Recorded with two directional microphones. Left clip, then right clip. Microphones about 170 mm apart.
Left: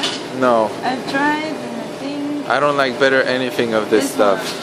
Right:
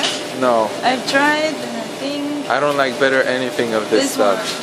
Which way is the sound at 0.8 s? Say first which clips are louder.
Right 3 dB; 30° right (ahead or behind).